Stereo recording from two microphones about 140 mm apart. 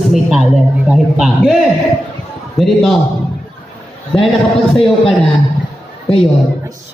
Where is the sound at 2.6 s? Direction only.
5° left (ahead or behind).